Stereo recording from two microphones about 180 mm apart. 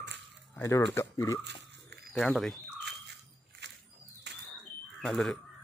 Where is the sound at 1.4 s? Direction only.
70° right (ahead or behind).